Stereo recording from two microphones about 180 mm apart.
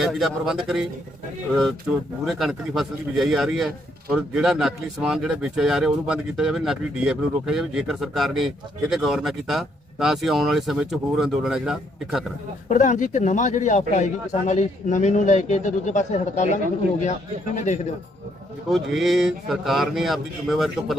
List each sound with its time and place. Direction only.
0.0 s speech: centre (ahead or behind)
1.9 s speech: 5° right (ahead or behind)
12.6 s a man's voice: 45° left (ahead or behind)
18.7 s speech: centre (ahead or behind)